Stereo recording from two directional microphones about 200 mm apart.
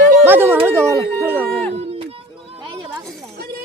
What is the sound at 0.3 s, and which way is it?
Speech, 10° right (ahead or behind).